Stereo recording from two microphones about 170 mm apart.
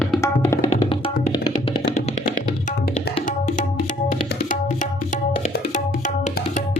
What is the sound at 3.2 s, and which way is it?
Tabla, 50° left (ahead or behind).